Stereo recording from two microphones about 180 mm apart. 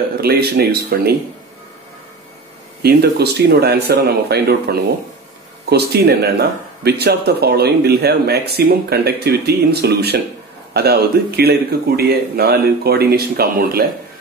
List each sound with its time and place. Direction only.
0.2 s speech: 60° right (ahead or behind)
2.8 s speech: 60° right (ahead or behind)